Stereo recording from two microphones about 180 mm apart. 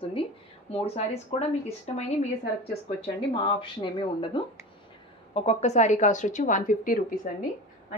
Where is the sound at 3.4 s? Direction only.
25° left (ahead or behind); by 7.1 s 50° left (ahead or behind).